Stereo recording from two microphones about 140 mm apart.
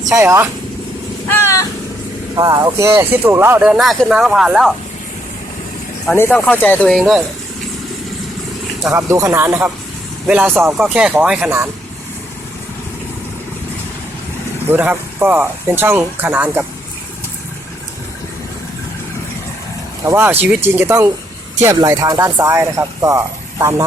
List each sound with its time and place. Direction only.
0.1 s speech: 20° right (ahead or behind)
1.3 s vehicle: 20° left (ahead or behind)
2.3 s speech: 25° right (ahead or behind); by 4.7 s 5° right (ahead or behind)
6.1 s speech: 15° left (ahead or behind)
8.9 s speech: 20° right (ahead or behind); by 11.5 s 5° right (ahead or behind)
14.7 s speech: 15° right (ahead or behind)
20.1 s speech: 15° right (ahead or behind)